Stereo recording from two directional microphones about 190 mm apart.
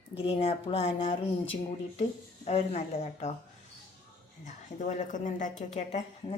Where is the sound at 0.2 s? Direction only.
30° left (ahead or behind).